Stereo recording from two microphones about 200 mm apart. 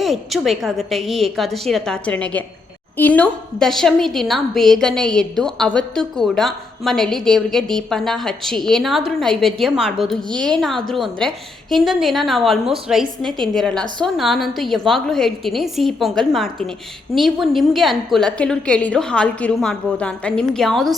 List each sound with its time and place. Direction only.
0.0 s a woman's voice: centre (ahead or behind)
10.2 s a woman's voice: 20° right (ahead or behind)
10.6 s a woman's voice: centre (ahead or behind)